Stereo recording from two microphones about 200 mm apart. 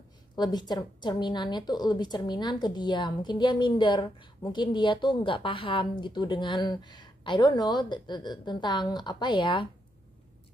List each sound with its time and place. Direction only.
0.4 s a woman's voice: 20° left (ahead or behind)